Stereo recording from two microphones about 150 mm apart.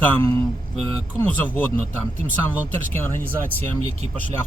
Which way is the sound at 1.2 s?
10° left (ahead or behind).